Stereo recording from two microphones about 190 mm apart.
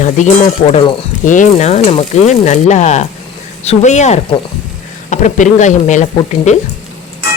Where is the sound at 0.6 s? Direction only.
25° left (ahead or behind).